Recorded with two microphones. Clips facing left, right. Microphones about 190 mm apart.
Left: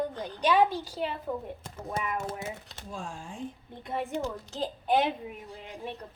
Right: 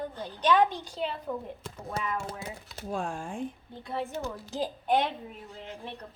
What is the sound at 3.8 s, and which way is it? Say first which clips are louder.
Speech: left 1 dB; 15° left (ahead or behind).